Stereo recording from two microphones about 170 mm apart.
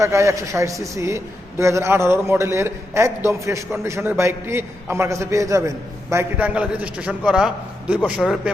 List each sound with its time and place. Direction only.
0.0 s a man's voice: 15° right (ahead or behind)